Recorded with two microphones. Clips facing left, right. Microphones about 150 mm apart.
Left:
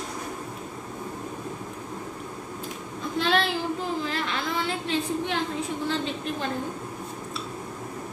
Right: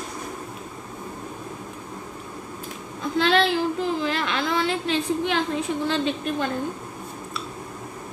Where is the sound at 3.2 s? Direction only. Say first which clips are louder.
Right 5 dB; 80° right.